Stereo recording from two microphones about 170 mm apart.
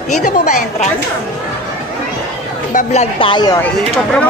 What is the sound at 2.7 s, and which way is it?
Speech, 45° left (ahead or behind).